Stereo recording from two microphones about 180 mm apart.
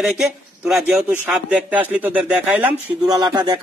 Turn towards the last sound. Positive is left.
turn(degrees=-25)  # may be behind; listen again after turning